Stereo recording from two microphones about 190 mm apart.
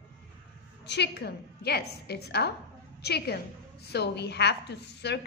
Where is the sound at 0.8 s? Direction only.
65° left (ahead or behind).